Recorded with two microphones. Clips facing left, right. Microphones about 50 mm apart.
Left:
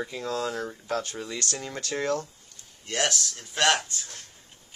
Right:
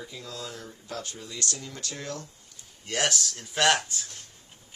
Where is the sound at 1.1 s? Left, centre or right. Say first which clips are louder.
Left 6 dB; left.